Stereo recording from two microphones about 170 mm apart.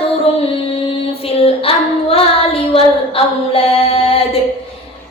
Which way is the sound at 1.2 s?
35° left (ahead or behind).